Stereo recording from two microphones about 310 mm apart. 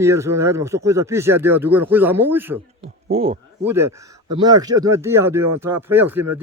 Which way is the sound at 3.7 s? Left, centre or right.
Centre.